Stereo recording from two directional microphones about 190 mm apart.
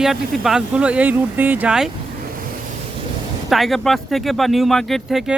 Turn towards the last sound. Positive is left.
turn(degrees=0)  # may be behind; listen again after turning